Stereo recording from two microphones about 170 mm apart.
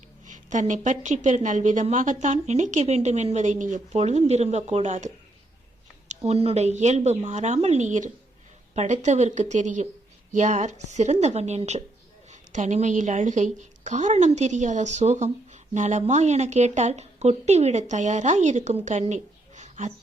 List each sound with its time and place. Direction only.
0.3 s a woman's voice: 45° right (ahead or behind)